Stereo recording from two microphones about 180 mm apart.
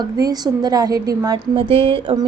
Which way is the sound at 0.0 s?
20° right (ahead or behind).